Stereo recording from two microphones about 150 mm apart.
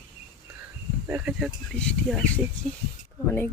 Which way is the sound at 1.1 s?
10° right (ahead or behind).